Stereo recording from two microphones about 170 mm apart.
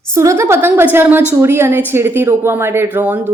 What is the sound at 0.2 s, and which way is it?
Speech, 15° right (ahead or behind).